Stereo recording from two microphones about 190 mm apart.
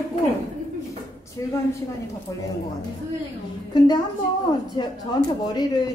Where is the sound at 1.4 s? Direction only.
20° left (ahead or behind).